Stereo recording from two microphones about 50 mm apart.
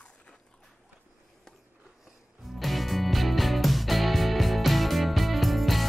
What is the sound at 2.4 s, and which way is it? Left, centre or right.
Music, centre.